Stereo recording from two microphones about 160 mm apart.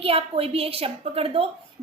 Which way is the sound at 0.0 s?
35° right (ahead or behind).